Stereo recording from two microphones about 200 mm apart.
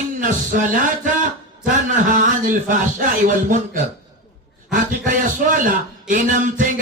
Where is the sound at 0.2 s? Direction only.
40° right (ahead or behind).